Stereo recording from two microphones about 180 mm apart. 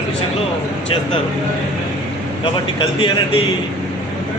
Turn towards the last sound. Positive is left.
turn(degrees=30)  # may be behind; listen again after turning